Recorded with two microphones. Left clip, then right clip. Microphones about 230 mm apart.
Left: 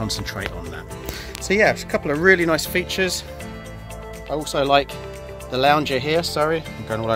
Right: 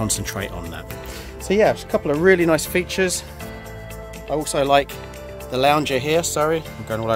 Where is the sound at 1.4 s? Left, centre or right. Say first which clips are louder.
Even; centre.